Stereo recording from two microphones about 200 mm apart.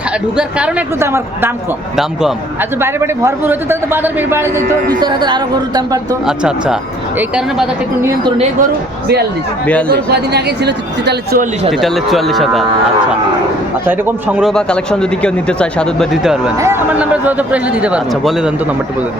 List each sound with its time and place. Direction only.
0.3 s a man's voice: 5° right (ahead or behind)
6.2 s a man's voice: 5° right (ahead or behind)
9.9 s speech: 55° right (ahead or behind)
11.7 s speech: centre (ahead or behind)
13.8 s speech: 10° right (ahead or behind)
16.6 s a man's voice: 10° right (ahead or behind)